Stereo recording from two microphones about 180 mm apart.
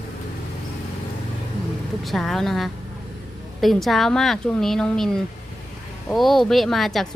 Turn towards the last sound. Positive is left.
turn(degrees=0)  # may be behind; listen again after turning